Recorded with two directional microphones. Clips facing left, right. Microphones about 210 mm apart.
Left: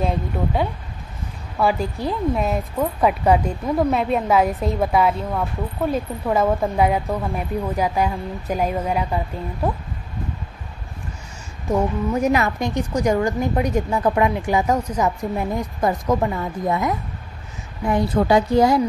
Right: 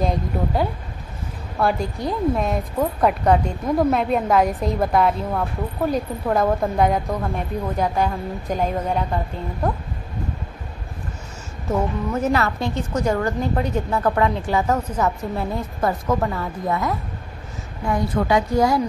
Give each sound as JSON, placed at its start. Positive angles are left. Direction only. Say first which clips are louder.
{"t": 1.6, "sound": "speech", "louder": "left 1 dB", "side_deg": 0}
{"t": 11.7, "sound": "a woman's voice", "louder": "left 2 dB", "side_deg": 10}